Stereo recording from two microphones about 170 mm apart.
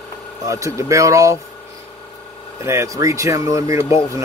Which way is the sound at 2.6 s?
15° right (ahead or behind).